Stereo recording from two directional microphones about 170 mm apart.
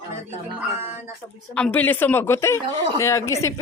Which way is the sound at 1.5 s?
10° left (ahead or behind).